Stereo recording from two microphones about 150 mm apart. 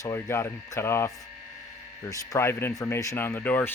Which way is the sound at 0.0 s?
20° left (ahead or behind).